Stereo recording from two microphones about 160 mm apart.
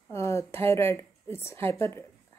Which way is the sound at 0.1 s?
15° left (ahead or behind).